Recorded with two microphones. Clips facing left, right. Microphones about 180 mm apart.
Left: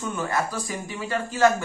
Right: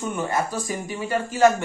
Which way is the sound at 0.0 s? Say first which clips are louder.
Right 2 dB; 20° right (ahead or behind).